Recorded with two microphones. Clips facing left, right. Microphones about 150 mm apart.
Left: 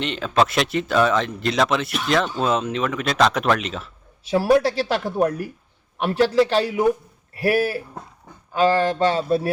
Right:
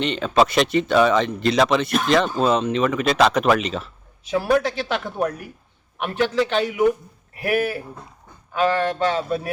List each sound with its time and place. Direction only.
0.0 s speech: centre (ahead or behind)
4.2 s speech: 30° left (ahead or behind)